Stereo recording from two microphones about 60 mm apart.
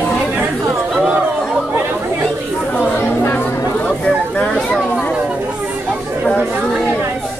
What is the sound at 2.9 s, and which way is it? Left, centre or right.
Chatter, left.